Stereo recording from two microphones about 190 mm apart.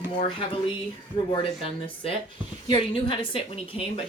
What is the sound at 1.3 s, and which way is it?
Speech, 30° left (ahead or behind).